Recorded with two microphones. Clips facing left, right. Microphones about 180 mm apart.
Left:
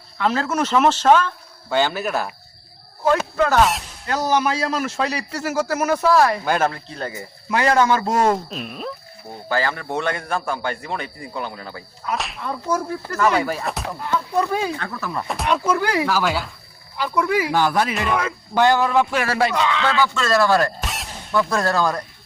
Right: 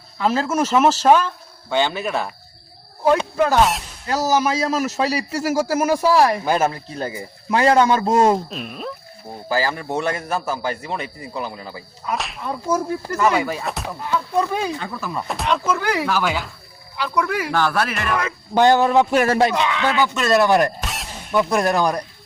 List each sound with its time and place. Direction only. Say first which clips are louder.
0.2 s speech: right 1 dB; 10° right (ahead or behind)
1.7 s speech: even; 5° left (ahead or behind)
3.3 s speech: right 1 dB; 15° right (ahead or behind)
3.6 s speech: even; centre (ahead or behind)
7.5 s speech: right 2 dB; 30° right (ahead or behind)
8.4 s speech: even; centre (ahead or behind); by 17.9 s 15° left (ahead or behind)
18.1 s speech: left 1 dB; centre (ahead or behind)
18.5 s speech: right 3 dB; 20° right (ahead or behind)
20.8 s a sound: even; centre (ahead or behind)
21.3 s speech: right 2 dB; 15° right (ahead or behind)